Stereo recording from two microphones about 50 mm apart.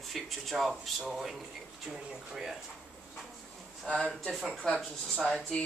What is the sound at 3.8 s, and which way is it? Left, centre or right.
Speech, left.